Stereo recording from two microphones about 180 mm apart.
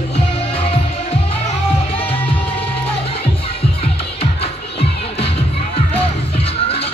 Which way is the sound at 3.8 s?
30° left (ahead or behind).